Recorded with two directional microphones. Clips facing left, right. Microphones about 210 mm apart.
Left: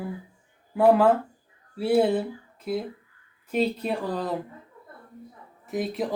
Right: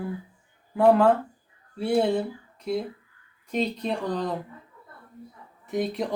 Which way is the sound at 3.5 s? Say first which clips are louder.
Left 2 dB; 5° left (ahead or behind).